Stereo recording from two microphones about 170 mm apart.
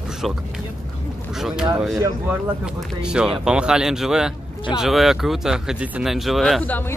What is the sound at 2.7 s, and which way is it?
Speech, 5° right (ahead or behind).